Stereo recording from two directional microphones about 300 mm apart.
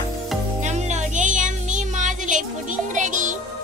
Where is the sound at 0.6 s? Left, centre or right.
Right.